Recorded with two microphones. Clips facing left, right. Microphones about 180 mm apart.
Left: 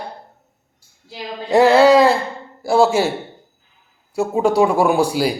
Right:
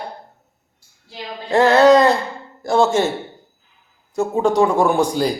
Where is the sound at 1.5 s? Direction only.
10° left (ahead or behind).